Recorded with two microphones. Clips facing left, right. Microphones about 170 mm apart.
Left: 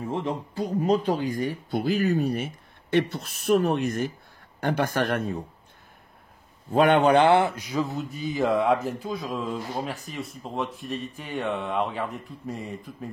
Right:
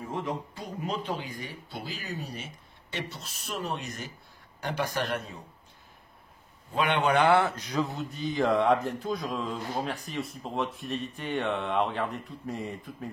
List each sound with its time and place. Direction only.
0.1 s speech: 30° left (ahead or behind); by 5.4 s 55° left (ahead or behind)
6.7 s speech: 45° left (ahead or behind)
7.1 s speech: 25° left (ahead or behind); by 13.1 s centre (ahead or behind)